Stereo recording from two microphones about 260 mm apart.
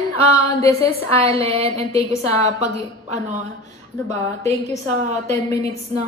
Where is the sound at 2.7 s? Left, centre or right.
Right.